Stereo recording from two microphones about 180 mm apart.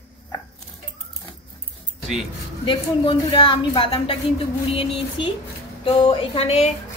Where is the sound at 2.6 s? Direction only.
30° left (ahead or behind).